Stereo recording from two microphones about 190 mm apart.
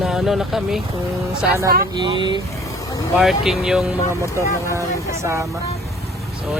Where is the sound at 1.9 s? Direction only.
25° right (ahead or behind).